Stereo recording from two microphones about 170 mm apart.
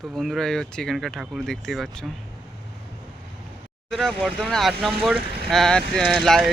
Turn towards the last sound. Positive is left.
turn(degrees=5)  # may be behind; listen again after turning